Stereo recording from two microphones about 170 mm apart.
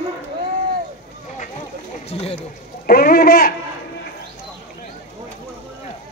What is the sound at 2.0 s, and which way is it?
Speech, 35° left (ahead or behind).